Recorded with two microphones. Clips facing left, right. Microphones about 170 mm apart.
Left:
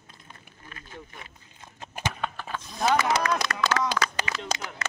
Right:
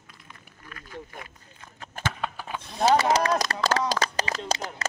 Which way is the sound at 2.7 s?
35° right (ahead or behind).